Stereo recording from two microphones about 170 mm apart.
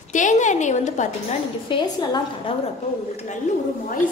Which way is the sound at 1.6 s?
25° left (ahead or behind).